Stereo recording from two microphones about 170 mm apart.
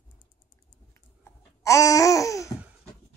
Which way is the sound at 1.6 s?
20° left (ahead or behind).